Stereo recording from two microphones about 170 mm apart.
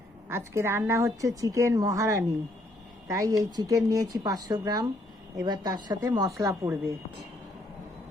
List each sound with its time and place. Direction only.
0.3 s a woman's voice: 15° right (ahead or behind)